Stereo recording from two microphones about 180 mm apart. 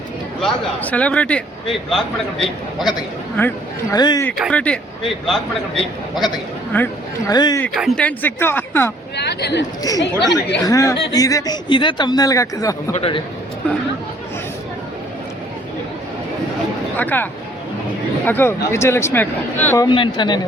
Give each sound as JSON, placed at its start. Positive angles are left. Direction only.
{"t": 0.4, "sound": "speech", "side_deg": 10}
{"t": 3.9, "sound": "a man's voice", "side_deg": 20}
{"t": 4.4, "sound": "speech", "side_deg": 5}
{"t": 6.7, "sound": "speech", "side_deg": 10}
{"t": 7.3, "sound": "a man's voice", "side_deg": 25}
{"t": 7.7, "sound": "speech", "side_deg": 0}
{"t": 9.1, "sound": "speech", "side_deg": 65}
{"t": 10.6, "sound": "a man's voice", "side_deg": 20}
{"t": 12.9, "sound": "a man's voice", "side_deg": 30}
{"t": 17.0, "sound": "speech", "side_deg": 10}
{"t": 18.3, "sound": "speech", "side_deg": 10}
{"t": 19.9, "sound": "a man's voice", "side_deg": 25}